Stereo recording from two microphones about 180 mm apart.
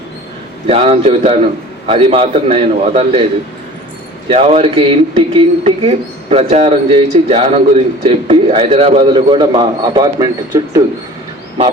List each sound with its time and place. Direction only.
0.7 s speech: 35° right (ahead or behind)
4.3 s a man's voice: 35° right (ahead or behind); by 10.8 s 20° right (ahead or behind)